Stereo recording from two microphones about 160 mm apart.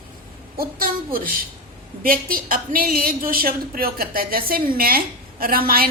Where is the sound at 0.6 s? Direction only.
70° right (ahead or behind).